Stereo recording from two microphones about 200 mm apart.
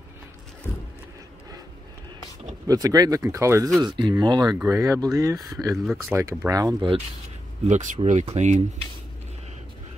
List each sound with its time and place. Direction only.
0.7 s a sound: 15° left (ahead or behind)
2.6 s speech: 20° right (ahead or behind)
7.6 s speech: 35° right (ahead or behind)